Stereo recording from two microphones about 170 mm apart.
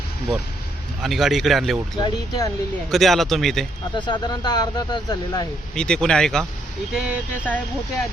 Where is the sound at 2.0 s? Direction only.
25° left (ahead or behind).